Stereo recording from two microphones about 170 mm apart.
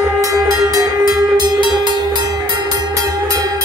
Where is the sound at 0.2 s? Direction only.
20° right (ahead or behind).